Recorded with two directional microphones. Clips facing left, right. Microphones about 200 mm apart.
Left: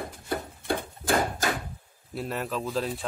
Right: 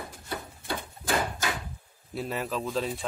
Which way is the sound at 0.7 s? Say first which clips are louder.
Left 4 dB; 50° left (ahead or behind).